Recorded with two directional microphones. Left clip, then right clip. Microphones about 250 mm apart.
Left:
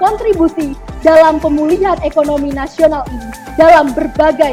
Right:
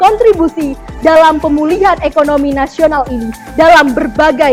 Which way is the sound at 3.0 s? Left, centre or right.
Centre.